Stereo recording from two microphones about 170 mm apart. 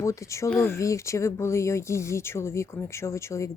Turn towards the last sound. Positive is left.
turn(degrees=15)  # may be behind; listen again after turning